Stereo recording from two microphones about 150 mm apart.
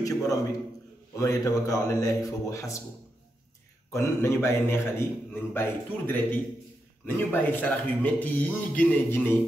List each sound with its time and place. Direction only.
0.0 s a man's voice: 20° left (ahead or behind)
3.9 s a man's voice: 15° left (ahead or behind)